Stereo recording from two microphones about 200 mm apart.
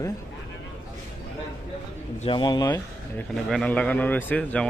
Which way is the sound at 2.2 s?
25° left (ahead or behind).